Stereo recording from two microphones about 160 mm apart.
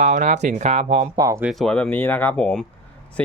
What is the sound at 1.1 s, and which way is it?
Speech, 25° right (ahead or behind).